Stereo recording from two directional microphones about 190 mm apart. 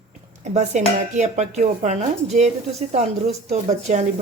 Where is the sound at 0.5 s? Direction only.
40° right (ahead or behind).